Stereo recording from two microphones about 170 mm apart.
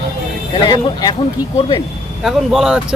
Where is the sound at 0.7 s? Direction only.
25° left (ahead or behind).